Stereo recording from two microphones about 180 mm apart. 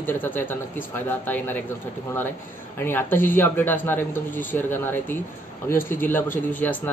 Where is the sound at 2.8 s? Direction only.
10° left (ahead or behind).